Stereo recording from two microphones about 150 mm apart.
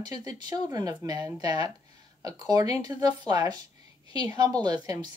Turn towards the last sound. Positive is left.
turn(degrees=-25)  # may be behind; listen again after turning